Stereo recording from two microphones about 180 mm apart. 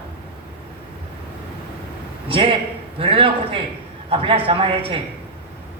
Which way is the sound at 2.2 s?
30° right (ahead or behind).